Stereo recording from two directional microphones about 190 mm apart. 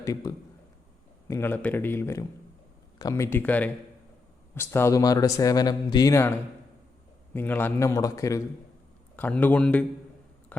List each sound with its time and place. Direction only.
0.0 s speech: 20° left (ahead or behind)
7.3 s speech: 10° left (ahead or behind)